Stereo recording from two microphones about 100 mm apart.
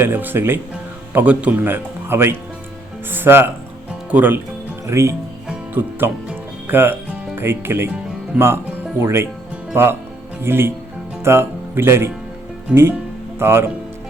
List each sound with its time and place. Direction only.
0.0 s speech: 20° right (ahead or behind)
4.9 s speech: 30° right (ahead or behind)
5.5 s music: 15° right (ahead or behind)
6.7 s speech: 20° right (ahead or behind)
12.7 s speech: 10° right (ahead or behind)
13.4 s speech: 25° right (ahead or behind)